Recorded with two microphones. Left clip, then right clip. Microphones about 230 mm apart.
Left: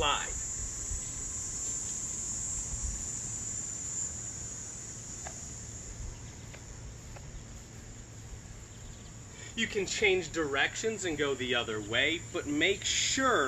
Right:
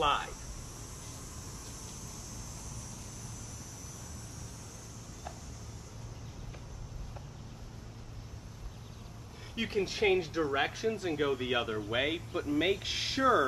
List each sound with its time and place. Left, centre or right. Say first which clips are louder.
0.0 s cricket: right 1 dB; centre
9.6 s speech: left 1 dB; centre